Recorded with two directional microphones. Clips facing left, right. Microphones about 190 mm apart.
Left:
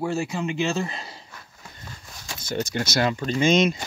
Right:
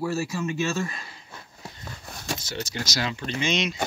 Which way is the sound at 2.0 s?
65° right (ahead or behind).